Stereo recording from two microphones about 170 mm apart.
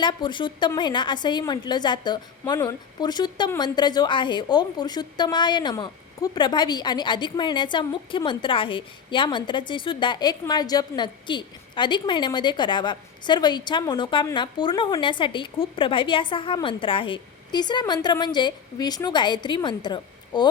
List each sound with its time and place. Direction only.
0.0 s a woman's voice: 25° left (ahead or behind)